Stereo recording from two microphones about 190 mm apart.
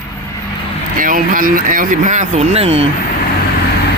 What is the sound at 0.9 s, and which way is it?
Speech, 45° right (ahead or behind).